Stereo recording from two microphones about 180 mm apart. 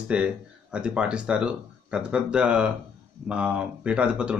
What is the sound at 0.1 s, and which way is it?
Speech, 5° right (ahead or behind).